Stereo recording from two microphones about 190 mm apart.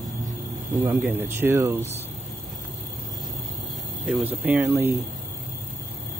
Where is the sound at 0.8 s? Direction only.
10° right (ahead or behind).